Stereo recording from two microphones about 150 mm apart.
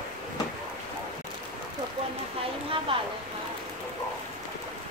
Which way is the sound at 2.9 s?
35° right (ahead or behind).